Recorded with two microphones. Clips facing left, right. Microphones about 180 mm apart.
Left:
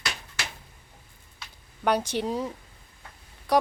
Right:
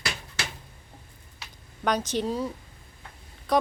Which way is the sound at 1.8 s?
10° left (ahead or behind).